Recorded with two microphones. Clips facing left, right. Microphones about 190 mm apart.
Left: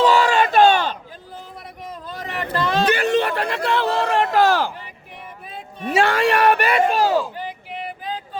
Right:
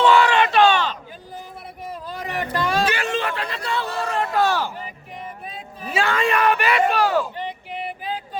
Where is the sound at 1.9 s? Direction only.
10° right (ahead or behind).